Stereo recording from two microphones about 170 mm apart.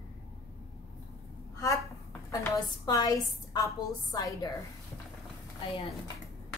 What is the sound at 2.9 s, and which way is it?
A woman's voice, 20° left (ahead or behind).